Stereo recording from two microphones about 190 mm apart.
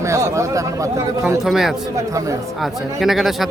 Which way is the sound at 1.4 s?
Centre (ahead or behind).